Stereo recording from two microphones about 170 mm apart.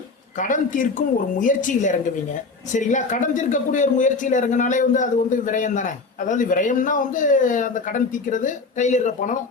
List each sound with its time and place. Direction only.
0.3 s speech: 50° left (ahead or behind)